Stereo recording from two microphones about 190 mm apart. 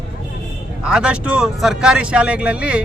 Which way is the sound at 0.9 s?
5° right (ahead or behind).